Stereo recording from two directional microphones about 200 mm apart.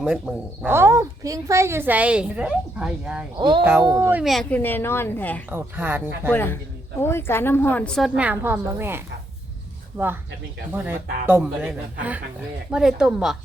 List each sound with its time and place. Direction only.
0.0 s speech: 5° right (ahead or behind)
3.3 s a child's voice: 25° right (ahead or behind)
3.6 s speech: 10° right (ahead or behind); by 5.4 s 10° left (ahead or behind)
5.5 s speech: 10° right (ahead or behind)
6.3 s a woman's voice: 10° left (ahead or behind); by 9.0 s 10° right (ahead or behind)
10.7 s a woman's voice: 10° right (ahead or behind)